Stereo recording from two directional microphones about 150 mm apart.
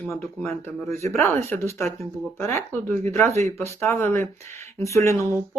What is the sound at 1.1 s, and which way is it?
Speech, 15° left (ahead or behind).